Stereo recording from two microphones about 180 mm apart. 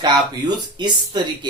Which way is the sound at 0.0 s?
25° right (ahead or behind).